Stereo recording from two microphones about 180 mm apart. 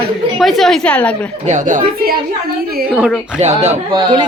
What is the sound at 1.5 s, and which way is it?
Speech, 45° right (ahead or behind).